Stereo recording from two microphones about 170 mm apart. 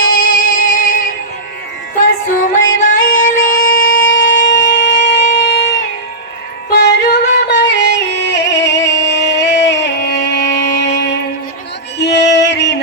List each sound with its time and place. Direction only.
0.1 s music: 55° left (ahead or behind)
2.4 s music: 50° left (ahead or behind)
4.0 s shofar: 90° left
6.7 s yodeling: 80° left
10.8 s music: 90° left